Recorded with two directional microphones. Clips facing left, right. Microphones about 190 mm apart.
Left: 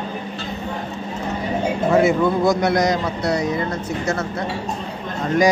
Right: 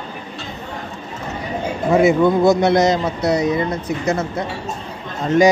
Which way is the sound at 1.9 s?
20° right (ahead or behind).